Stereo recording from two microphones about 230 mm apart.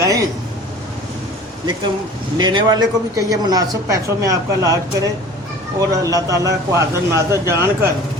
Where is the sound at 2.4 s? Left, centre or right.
Centre.